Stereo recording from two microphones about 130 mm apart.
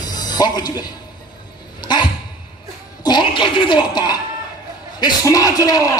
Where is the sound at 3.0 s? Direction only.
35° left (ahead or behind).